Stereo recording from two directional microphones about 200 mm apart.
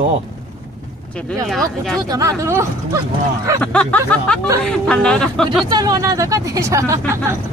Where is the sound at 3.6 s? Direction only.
5° left (ahead or behind).